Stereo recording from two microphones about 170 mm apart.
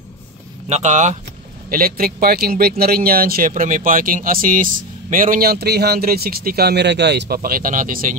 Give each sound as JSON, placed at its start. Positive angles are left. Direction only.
{"t": 0.7, "sound": "speech", "side_deg": -45}
{"t": 1.7, "sound": "speech", "side_deg": -60}